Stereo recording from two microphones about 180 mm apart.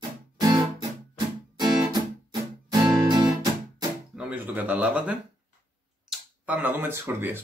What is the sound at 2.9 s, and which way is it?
Guitar, 25° right (ahead or behind).